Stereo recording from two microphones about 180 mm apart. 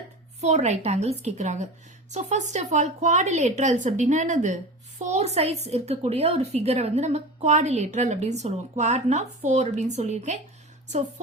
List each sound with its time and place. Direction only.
0.4 s a woman's voice: 40° right (ahead or behind)